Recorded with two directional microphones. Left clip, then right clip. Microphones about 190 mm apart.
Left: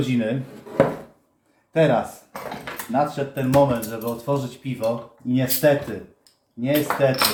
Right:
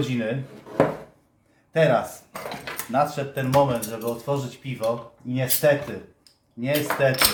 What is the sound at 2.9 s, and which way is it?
Speech, 45° right (ahead or behind).